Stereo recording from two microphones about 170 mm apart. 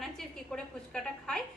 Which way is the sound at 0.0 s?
Centre (ahead or behind).